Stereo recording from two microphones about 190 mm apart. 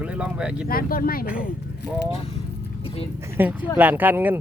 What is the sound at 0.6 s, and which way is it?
Speech, 50° left (ahead or behind).